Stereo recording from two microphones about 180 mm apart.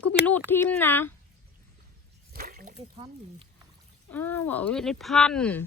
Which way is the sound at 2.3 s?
50° right (ahead or behind).